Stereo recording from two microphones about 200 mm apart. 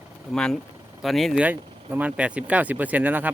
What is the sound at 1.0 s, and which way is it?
Speech, centre (ahead or behind).